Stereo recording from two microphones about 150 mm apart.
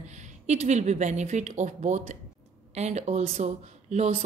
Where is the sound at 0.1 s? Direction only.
50° right (ahead or behind).